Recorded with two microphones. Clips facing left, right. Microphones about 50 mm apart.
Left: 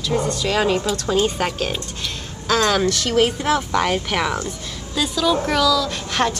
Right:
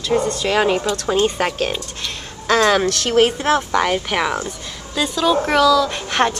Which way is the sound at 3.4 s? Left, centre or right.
Centre.